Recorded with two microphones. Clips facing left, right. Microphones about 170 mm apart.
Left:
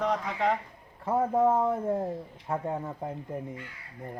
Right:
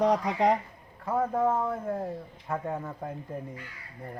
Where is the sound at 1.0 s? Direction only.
25° left (ahead or behind).